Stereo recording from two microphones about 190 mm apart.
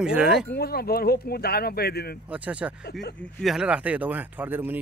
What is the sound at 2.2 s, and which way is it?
Speech, 5° right (ahead or behind).